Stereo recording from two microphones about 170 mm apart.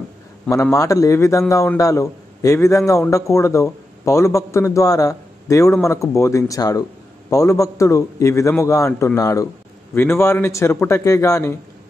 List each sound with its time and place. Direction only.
0.5 s a man's voice: 20° left (ahead or behind)